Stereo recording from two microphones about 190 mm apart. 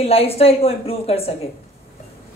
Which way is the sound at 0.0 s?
30° left (ahead or behind).